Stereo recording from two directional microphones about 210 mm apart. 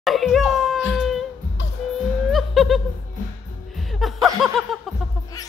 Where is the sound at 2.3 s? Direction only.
Centre (ahead or behind).